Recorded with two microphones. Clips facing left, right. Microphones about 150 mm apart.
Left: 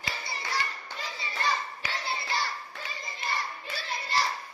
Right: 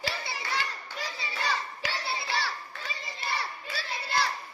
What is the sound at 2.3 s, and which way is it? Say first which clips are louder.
Children playing: even; 70° right (ahead or behind).